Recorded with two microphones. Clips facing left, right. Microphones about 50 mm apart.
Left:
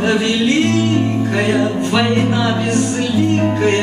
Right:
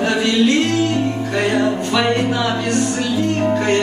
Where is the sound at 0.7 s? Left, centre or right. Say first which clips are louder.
Left 2 dB; centre.